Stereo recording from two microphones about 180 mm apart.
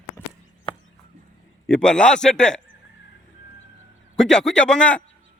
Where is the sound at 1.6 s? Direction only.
5° left (ahead or behind).